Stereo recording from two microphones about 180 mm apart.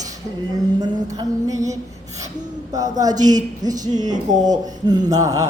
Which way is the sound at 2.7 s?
20° right (ahead or behind).